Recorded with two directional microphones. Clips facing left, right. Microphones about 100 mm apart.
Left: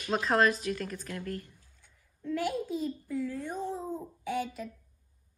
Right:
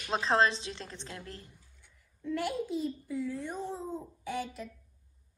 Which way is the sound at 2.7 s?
50° left (ahead or behind).